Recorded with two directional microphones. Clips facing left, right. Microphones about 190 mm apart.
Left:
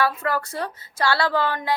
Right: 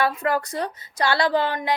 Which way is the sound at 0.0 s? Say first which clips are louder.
Right 1 dB; 20° right (ahead or behind).